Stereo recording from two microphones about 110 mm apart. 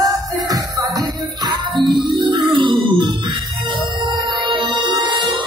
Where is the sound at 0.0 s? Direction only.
35° right (ahead or behind).